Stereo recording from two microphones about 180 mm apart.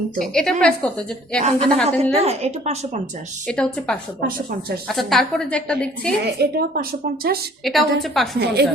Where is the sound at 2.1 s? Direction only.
35° right (ahead or behind).